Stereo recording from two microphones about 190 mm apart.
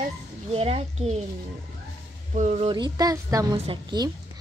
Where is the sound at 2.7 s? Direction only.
20° right (ahead or behind).